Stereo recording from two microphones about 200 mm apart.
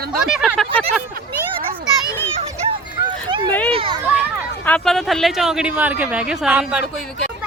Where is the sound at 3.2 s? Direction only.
25° right (ahead or behind).